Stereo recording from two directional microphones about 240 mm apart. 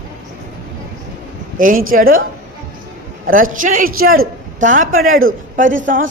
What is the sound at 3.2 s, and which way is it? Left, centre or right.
A woman's voice, right.